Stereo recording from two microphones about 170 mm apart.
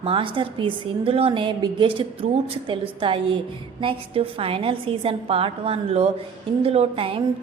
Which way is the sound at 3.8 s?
30° right (ahead or behind).